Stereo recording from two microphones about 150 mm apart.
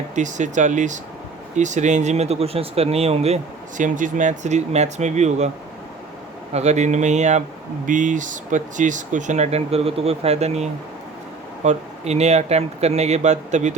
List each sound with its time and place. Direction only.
0.2 s speech: 55° right (ahead or behind)
6.5 s speech: 50° right (ahead or behind)